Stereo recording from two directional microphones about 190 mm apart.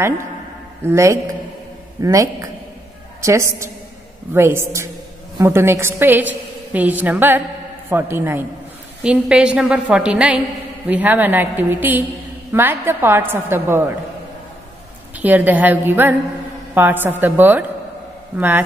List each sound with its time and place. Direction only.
0.8 s a woman's voice: 15° right (ahead or behind)
15.1 s a woman's voice: 10° right (ahead or behind)